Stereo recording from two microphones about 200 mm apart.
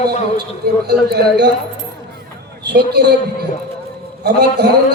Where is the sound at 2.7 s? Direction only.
55° right (ahead or behind).